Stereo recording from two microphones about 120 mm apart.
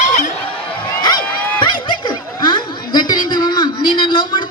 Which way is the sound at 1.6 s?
40° left (ahead or behind).